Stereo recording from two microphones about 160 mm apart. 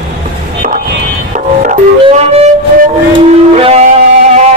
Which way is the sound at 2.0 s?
40° right (ahead or behind).